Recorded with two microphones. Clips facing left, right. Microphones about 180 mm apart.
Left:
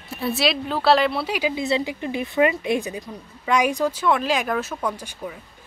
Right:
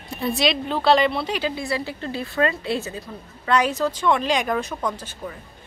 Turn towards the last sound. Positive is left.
turn(degrees=10)  # may be behind; listen again after turning